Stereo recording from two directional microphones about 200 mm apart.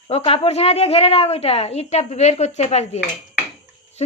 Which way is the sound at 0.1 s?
30° left (ahead or behind).